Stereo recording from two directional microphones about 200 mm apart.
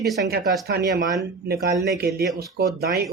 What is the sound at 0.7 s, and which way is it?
Speech, 50° right (ahead or behind).